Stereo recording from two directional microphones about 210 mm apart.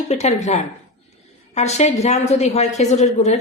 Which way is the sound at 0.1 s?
30° left (ahead or behind).